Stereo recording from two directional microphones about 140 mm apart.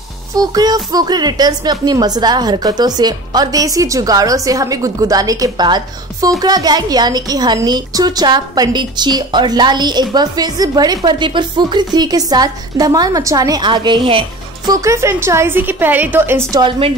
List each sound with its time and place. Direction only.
0.4 s speech: 30° right (ahead or behind)
14.7 s a woman's voice: 20° right (ahead or behind)